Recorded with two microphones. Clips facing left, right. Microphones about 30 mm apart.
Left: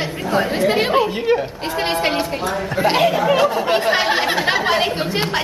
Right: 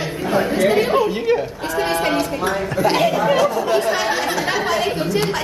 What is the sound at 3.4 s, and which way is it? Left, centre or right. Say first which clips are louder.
Speech: even; left.